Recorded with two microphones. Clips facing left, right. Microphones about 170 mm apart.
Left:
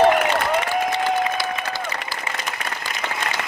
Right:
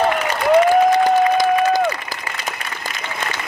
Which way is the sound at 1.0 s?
45° right (ahead or behind).